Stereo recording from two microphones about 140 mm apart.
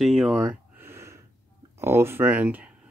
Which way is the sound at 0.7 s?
20° right (ahead or behind).